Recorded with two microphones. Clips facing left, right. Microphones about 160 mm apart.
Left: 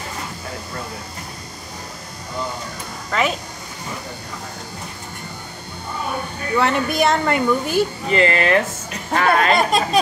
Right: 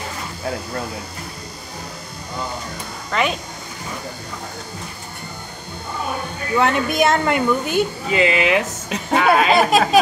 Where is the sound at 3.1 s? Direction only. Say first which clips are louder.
Even; centre (ahead or behind).